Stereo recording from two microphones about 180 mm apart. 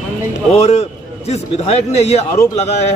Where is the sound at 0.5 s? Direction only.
40° left (ahead or behind).